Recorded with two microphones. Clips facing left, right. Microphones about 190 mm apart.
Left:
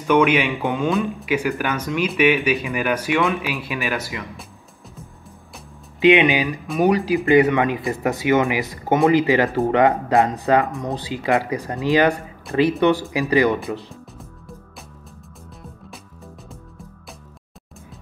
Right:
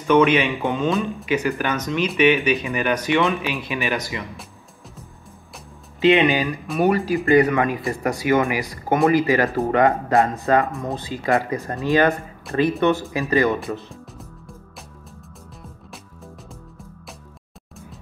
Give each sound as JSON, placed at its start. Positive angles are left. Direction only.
{"t": 0.0, "sound": "speech", "side_deg": 10}
{"t": 5.9, "sound": "speech", "side_deg": 15}